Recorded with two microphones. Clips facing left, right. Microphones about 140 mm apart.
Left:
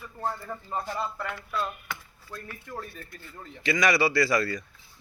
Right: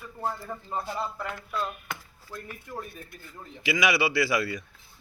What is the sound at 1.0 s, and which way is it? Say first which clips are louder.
A man's voice: even; 15° right (ahead or behind).